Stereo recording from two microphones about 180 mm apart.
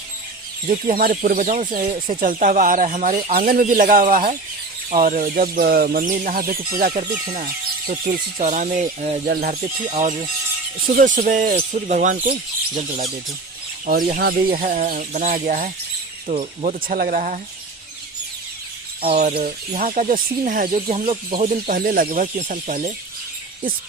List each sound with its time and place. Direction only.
0.7 s speech: 50° right (ahead or behind)
3.2 s speech: 55° right (ahead or behind)
9.2 s speech: 60° right (ahead or behind)
9.5 s speech: 40° right (ahead or behind)
13.8 s speech: 55° right (ahead or behind)
19.0 s speech: 35° right (ahead or behind)
20.7 s speech: 35° right (ahead or behind)